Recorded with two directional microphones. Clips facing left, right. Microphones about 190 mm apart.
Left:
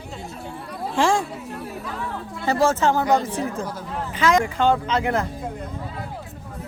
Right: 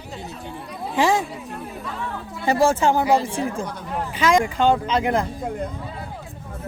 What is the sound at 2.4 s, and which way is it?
Speech, 15° right (ahead or behind).